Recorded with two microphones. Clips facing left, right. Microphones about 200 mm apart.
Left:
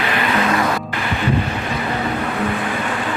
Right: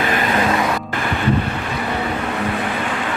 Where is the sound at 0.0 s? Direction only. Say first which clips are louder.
Right 1 dB; 45° right (ahead or behind).